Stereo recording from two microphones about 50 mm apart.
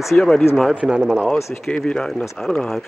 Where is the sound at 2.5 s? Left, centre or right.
Left.